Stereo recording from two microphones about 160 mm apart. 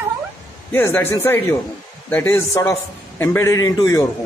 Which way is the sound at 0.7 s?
15° left (ahead or behind).